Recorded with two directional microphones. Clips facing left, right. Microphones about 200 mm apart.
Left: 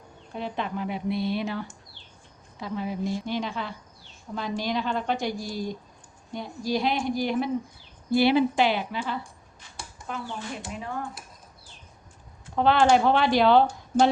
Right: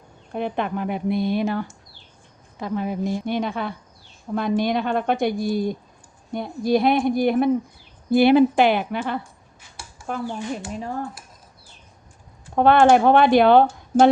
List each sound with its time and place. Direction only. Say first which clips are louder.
0.3 s a woman's voice: right 6 dB; 55° right (ahead or behind)
10.7 s speech: right 5 dB; 35° right (ahead or behind)
12.5 s speech: right 5 dB; 55° right (ahead or behind)